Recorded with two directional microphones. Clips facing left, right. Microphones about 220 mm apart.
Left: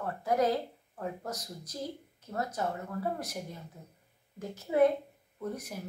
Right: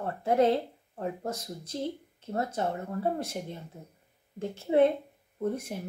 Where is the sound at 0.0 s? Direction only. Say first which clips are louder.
Right 4 dB; 25° right (ahead or behind).